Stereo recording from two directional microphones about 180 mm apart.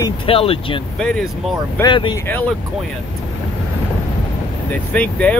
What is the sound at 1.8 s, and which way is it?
Speech, 25° left (ahead or behind).